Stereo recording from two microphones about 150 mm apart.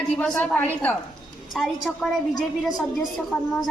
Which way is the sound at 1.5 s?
Centre (ahead or behind).